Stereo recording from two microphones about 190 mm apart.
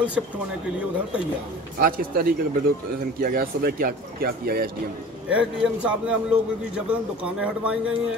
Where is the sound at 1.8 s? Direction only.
50° right (ahead or behind).